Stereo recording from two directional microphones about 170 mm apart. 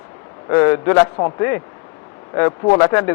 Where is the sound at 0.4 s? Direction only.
20° left (ahead or behind).